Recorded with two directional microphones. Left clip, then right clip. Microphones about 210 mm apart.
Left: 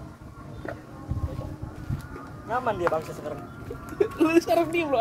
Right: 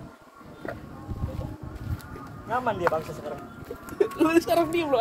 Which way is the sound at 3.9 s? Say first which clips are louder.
Even; 10° right (ahead or behind).